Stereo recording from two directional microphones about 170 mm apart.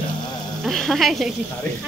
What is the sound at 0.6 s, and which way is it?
Speech, centre (ahead or behind).